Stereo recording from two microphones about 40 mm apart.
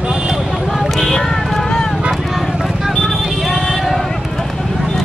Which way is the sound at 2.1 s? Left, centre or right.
Centre.